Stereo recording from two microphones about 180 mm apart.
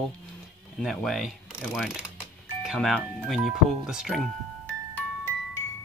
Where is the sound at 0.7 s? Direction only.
Centre (ahead or behind).